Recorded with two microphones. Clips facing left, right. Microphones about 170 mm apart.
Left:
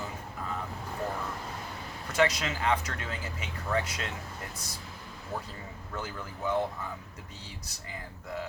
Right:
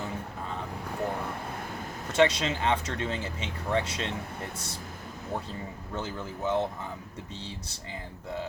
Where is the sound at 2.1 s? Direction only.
30° right (ahead or behind).